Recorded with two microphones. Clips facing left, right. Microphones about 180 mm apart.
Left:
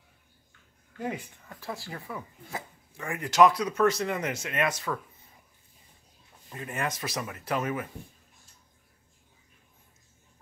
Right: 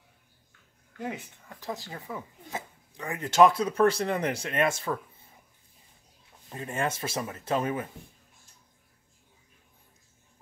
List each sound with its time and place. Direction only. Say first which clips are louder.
1.1 s speech: left 2 dB; 20° right (ahead or behind)
6.5 s speech: right 2 dB; 30° right (ahead or behind)